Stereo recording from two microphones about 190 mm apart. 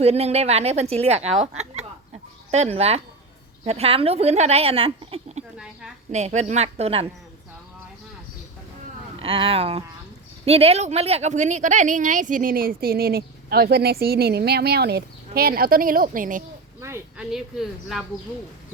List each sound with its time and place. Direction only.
0.0 s a woman's voice: 35° right (ahead or behind)
9.1 s speech: 30° right (ahead or behind); by 16.4 s 45° right (ahead or behind)
16.8 s speech: 15° right (ahead or behind)
17.3 s speech: centre (ahead or behind)